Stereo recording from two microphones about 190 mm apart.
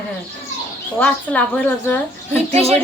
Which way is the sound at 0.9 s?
5° left (ahead or behind).